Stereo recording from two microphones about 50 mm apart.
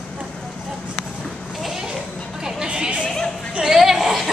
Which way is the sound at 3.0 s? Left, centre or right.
Centre.